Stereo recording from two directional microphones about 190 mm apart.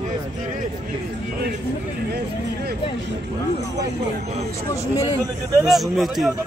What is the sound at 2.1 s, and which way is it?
Speech, 55° right (ahead or behind).